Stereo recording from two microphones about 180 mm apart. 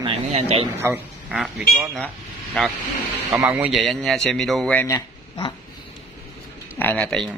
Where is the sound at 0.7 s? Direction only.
15° right (ahead or behind).